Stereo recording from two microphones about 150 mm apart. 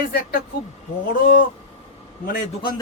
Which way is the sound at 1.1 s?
65° left (ahead or behind).